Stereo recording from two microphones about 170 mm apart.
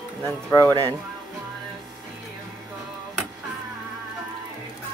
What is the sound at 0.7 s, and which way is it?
Speech, 20° right (ahead or behind).